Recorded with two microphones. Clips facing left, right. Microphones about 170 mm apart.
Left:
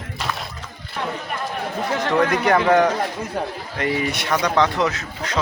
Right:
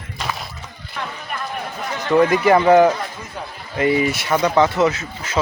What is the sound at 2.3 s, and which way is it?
Speech, 5° right (ahead or behind).